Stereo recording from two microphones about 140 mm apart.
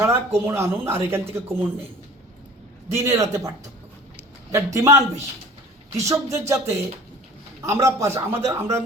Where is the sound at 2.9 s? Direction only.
20° right (ahead or behind).